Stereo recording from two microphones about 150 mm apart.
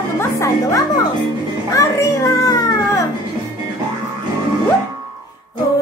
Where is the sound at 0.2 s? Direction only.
20° left (ahead or behind).